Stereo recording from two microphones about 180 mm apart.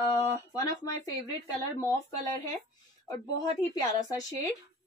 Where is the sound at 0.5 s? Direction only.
20° left (ahead or behind).